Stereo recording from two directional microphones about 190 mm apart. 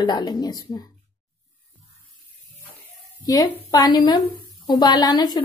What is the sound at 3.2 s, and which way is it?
A woman's voice, 20° left (ahead or behind).